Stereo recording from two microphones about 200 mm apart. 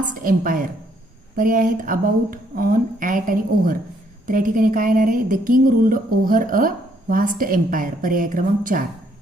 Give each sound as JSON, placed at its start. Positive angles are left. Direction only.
{"t": 0.1, "sound": "speech", "side_deg": -45}